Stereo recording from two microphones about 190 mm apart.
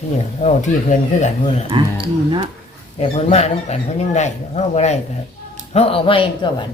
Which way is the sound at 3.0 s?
35° left (ahead or behind).